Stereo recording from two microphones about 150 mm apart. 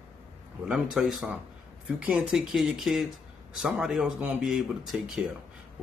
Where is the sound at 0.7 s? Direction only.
5° right (ahead or behind).